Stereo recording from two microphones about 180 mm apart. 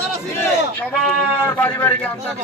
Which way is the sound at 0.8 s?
10° left (ahead or behind).